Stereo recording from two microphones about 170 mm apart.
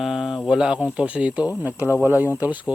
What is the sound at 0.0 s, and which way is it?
Speech, 5° right (ahead or behind).